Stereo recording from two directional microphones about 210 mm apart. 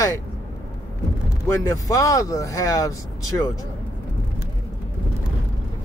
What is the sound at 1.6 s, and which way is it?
Speech, 15° left (ahead or behind).